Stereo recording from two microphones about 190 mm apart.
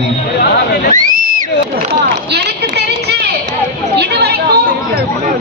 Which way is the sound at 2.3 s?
60° right (ahead or behind).